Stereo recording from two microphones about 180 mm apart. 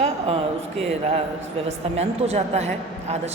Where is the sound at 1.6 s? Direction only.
35° right (ahead or behind).